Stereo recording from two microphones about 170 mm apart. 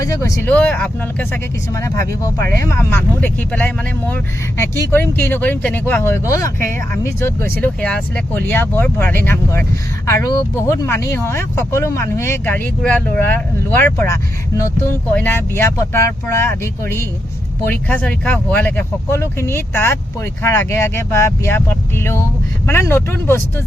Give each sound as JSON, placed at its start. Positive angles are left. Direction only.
{"t": 0.0, "sound": "speech", "side_deg": 20}